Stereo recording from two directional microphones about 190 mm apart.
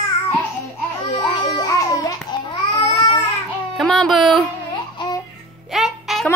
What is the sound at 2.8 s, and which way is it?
Baby cry, 20° left (ahead or behind).